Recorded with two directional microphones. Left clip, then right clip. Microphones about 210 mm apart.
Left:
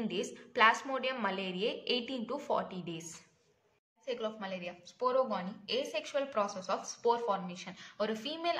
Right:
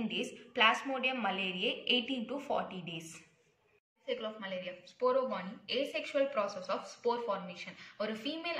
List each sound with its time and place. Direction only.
0.1 s a woman's voice: 55° left (ahead or behind)